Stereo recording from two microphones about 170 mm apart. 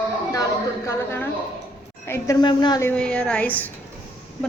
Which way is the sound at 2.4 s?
25° left (ahead or behind).